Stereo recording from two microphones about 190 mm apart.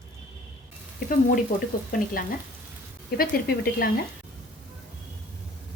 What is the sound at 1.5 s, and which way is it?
Speech, 45° left (ahead or behind).